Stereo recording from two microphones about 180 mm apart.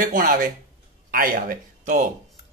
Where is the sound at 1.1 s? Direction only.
50° right (ahead or behind).